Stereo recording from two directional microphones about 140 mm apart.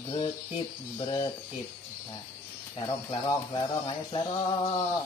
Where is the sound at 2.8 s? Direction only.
30° left (ahead or behind).